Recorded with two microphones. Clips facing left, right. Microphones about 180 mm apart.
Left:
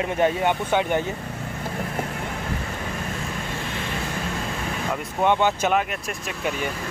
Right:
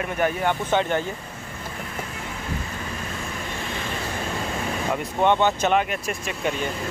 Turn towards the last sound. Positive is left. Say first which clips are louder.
# right 2 dB
turn(degrees=0)  # may be behind; listen again after turning